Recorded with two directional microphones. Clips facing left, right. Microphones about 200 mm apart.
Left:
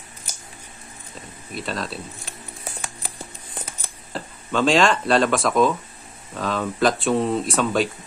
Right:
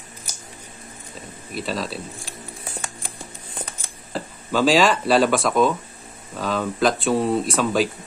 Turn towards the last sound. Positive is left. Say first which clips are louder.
# right 1 dB
turn(degrees=0)  # may be behind; listen again after turning